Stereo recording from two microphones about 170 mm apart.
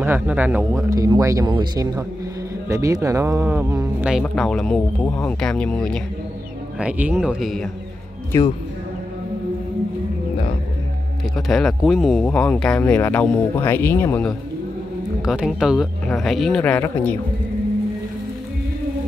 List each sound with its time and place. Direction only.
0.0 s speech: 10° right (ahead or behind)
4.2 s speech: 5° left (ahead or behind)
6.8 s speech: 10° right (ahead or behind)
8.3 s speech: 20° left (ahead or behind)
11.3 s speech: centre (ahead or behind)
15.2 s speech: 5° right (ahead or behind)